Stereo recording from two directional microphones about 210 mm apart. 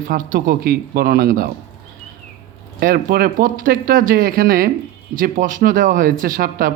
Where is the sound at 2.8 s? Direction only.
45° right (ahead or behind).